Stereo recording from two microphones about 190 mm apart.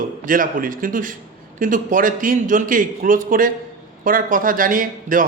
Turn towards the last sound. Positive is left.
turn(degrees=-45)  # may be behind; listen again after turning